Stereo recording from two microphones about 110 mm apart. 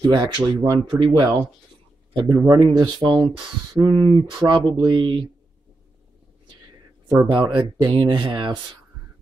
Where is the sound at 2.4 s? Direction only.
35° right (ahead or behind).